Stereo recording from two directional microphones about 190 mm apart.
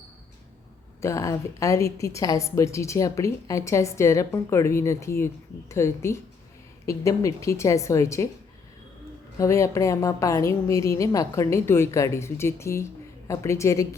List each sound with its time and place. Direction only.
1.0 s a woman's voice: 15° left (ahead or behind)
9.4 s a woman's voice: 15° left (ahead or behind)